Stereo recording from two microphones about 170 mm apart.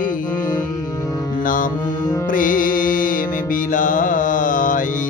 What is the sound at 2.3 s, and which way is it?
Music, 50° left (ahead or behind).